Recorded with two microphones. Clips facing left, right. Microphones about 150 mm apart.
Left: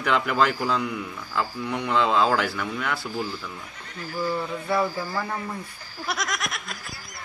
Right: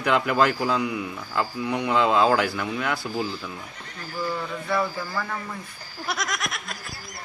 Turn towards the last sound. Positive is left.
turn(degrees=0)  # may be behind; listen again after turning